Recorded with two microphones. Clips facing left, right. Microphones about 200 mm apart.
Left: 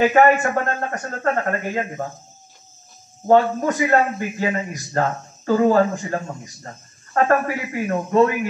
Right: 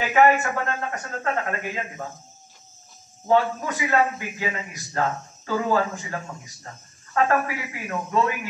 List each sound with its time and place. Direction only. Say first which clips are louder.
0.1 s a man's voice: left 3 dB; 45° left (ahead or behind)
3.3 s a man's voice: left 5 dB; 45° left (ahead or behind)